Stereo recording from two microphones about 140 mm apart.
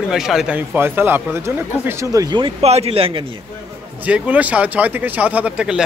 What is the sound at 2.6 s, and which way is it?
Speech, 45° right (ahead or behind).